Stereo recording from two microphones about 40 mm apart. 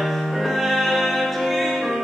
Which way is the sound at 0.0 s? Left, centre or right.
Centre.